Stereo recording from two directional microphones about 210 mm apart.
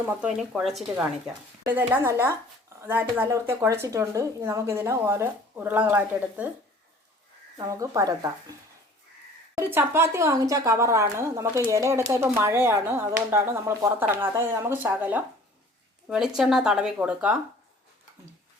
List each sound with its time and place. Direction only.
0.0 s speech: 5° right (ahead or behind)
7.6 s speech: 15° right (ahead or behind)
9.7 s speech: 10° right (ahead or behind)